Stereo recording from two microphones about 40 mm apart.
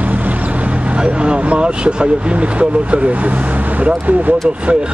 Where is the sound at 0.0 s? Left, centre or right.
Right.